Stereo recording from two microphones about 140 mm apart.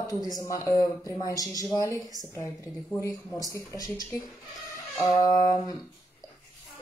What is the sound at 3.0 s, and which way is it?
Speech, 25° left (ahead or behind).